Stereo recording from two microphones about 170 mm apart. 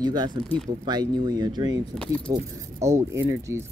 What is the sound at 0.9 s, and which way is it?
Speech, 25° right (ahead or behind).